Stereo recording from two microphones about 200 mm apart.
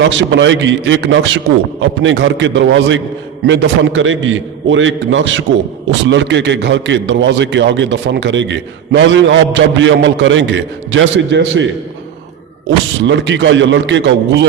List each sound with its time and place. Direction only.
0.0 s a man's voice: 65° right (ahead or behind)
13.0 s a man's voice: 65° right (ahead or behind)